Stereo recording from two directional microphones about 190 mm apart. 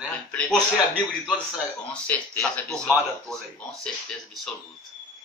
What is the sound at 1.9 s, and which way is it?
Speech, 10° left (ahead or behind).